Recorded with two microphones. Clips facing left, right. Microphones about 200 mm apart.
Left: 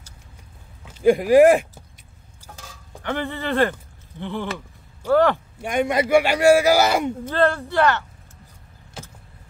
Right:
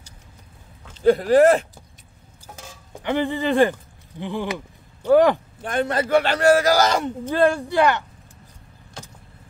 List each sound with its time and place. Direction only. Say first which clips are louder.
0.8 s speech: even; 10° left (ahead or behind)
2.5 s a sound: right 2 dB; 25° right (ahead or behind)
3.0 s speech: right 4 dB; 15° right (ahead or behind)
5.6 s speech: left 2 dB; 10° left (ahead or behind)
7.2 s speech: right 5 dB; 10° right (ahead or behind)